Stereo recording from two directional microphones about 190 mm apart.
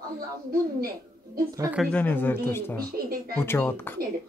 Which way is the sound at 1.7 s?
5° left (ahead or behind).